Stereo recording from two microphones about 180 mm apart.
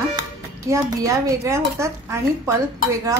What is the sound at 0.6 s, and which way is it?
A woman's voice, 15° right (ahead or behind).